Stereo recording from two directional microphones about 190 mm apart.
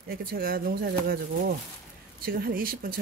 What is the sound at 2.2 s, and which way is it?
Speech, 50° right (ahead or behind).